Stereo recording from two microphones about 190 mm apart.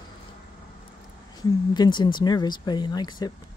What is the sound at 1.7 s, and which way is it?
Speech, 20° left (ahead or behind).